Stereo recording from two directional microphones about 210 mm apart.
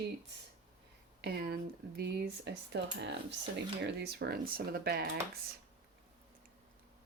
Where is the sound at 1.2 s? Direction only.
50° right (ahead or behind).